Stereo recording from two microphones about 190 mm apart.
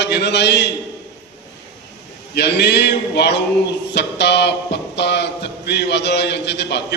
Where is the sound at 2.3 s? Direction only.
60° left (ahead or behind).